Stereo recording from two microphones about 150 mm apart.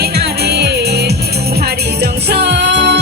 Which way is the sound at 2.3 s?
90° right.